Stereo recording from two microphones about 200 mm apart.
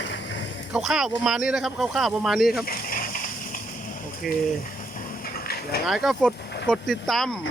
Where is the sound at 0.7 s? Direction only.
Centre (ahead or behind).